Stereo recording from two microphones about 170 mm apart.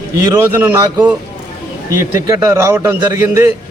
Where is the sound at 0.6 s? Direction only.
10° right (ahead or behind).